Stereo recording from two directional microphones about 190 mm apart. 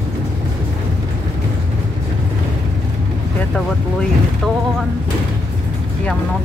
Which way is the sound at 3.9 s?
Centre (ahead or behind).